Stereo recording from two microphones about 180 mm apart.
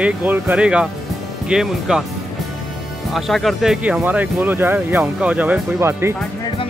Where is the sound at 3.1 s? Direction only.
Centre (ahead or behind).